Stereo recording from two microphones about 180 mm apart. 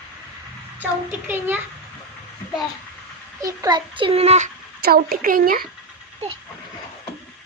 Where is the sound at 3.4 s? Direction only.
20° right (ahead or behind); by 4.5 s 40° right (ahead or behind).